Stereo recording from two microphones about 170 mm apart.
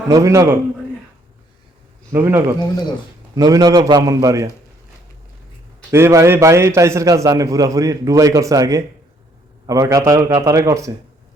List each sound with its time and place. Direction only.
0.1 s a man's voice: 20° right (ahead or behind)
2.1 s a man's voice: 15° right (ahead or behind)
5.9 s a man's voice: 15° right (ahead or behind)